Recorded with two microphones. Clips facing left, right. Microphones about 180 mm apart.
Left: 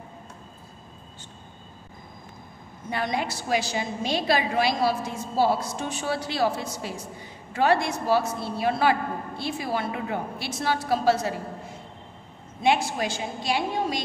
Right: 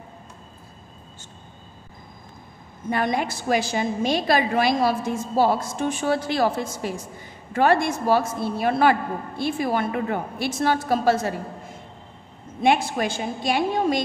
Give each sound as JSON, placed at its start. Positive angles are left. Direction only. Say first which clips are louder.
{"t": 2.9, "sound": "a woman's voice", "louder": "right 4 dB", "side_deg": -50}
{"t": 12.6, "sound": "a woman's voice", "louder": "right 3 dB", "side_deg": -55}